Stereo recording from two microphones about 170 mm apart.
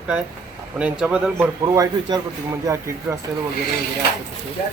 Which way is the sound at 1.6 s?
20° right (ahead or behind).